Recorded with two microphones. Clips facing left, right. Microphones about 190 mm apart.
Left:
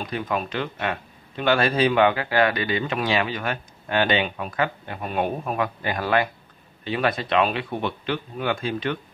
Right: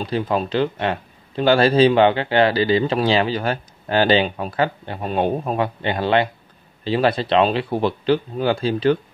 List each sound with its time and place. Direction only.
0.0 s speech: 30° right (ahead or behind)